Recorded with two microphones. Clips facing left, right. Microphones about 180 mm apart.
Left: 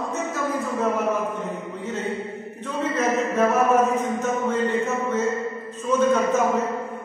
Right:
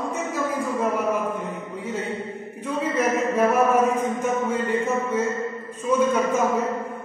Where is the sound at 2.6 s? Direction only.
10° right (ahead or behind).